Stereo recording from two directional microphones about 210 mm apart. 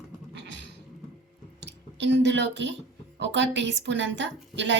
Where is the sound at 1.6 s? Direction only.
55° right (ahead or behind).